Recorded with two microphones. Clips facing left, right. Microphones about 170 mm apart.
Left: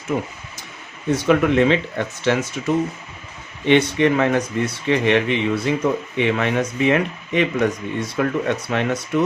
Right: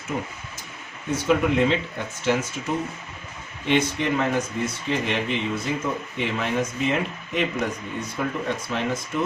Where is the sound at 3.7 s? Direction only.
70° left (ahead or behind).